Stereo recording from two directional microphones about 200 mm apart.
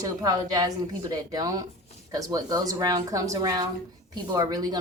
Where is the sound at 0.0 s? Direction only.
20° right (ahead or behind).